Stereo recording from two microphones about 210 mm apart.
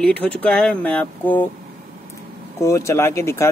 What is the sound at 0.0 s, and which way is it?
A man's voice, 5° left (ahead or behind).